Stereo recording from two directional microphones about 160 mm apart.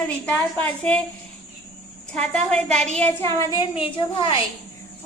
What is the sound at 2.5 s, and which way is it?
Speech, 5° left (ahead or behind).